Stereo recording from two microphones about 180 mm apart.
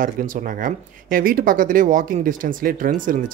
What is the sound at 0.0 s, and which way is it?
Speech, 50° right (ahead or behind).